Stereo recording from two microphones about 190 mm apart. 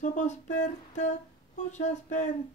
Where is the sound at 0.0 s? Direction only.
40° left (ahead or behind).